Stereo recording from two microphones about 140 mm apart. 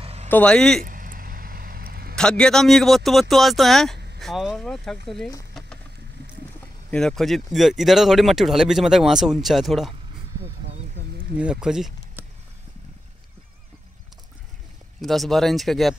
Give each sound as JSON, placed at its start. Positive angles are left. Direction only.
{"t": 0.0, "sound": "a sound", "side_deg": -45}
{"t": 0.3, "sound": "speech", "side_deg": 10}
{"t": 0.8, "sound": "hiccup", "side_deg": -75}
{"t": 2.1, "sound": "speech", "side_deg": 5}
{"t": 6.9, "sound": "speech", "side_deg": 5}
{"t": 11.3, "sound": "speech", "side_deg": -5}
{"t": 15.0, "sound": "speech", "side_deg": 0}